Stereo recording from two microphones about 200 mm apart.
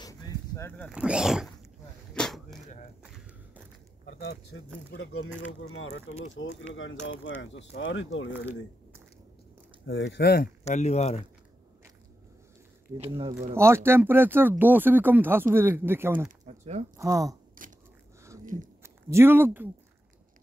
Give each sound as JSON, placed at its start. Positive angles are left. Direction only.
{"t": 0.6, "sound": "speech", "side_deg": 10}
{"t": 0.9, "sound": "a sound", "side_deg": -5}
{"t": 2.1, "sound": "arrow", "side_deg": 0}
{"t": 3.0, "sound": "walk", "side_deg": -5}
{"t": 4.0, "sound": "speech", "side_deg": 60}
{"t": 4.9, "sound": "speech", "side_deg": 75}
{"t": 9.8, "sound": "speech", "side_deg": 60}
{"t": 10.6, "sound": "speech", "side_deg": 35}
{"t": 12.9, "sound": "speech", "side_deg": -30}
{"t": 13.6, "sound": "speech", "side_deg": -10}
{"t": 16.3, "sound": "a sound", "side_deg": -35}
{"t": 16.9, "sound": "speech", "side_deg": -15}
{"t": 18.4, "sound": "a sound", "side_deg": -40}
{"t": 18.8, "sound": "speech", "side_deg": -15}